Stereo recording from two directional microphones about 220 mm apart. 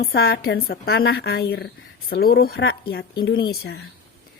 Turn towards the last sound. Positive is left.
turn(degrees=45)  # may be behind; listen again after turning